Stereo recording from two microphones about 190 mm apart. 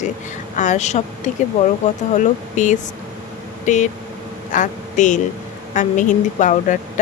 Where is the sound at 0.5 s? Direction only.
40° left (ahead or behind).